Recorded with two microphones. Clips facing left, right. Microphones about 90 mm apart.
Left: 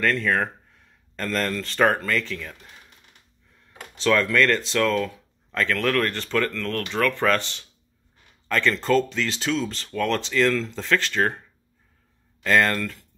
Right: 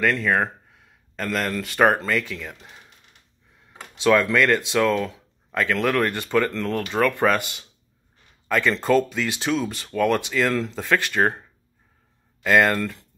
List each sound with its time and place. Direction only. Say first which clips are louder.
0.0 s speech: right 2 dB; 15° right (ahead or behind)
3.9 s speech: right 2 dB; 15° right (ahead or behind)
12.4 s speech: right 2 dB; 15° right (ahead or behind)